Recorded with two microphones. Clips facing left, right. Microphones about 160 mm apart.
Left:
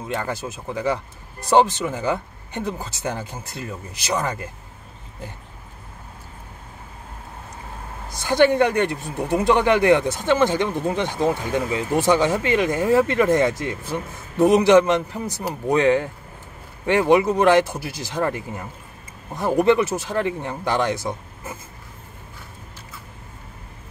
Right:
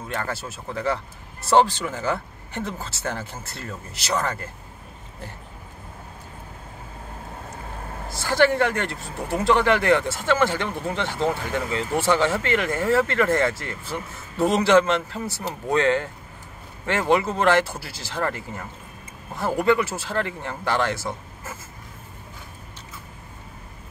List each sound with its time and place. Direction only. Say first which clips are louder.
0.1 s speech: left 3 dB; 15° left (ahead or behind)
8.1 s speech: left 3 dB; 20° left (ahead or behind)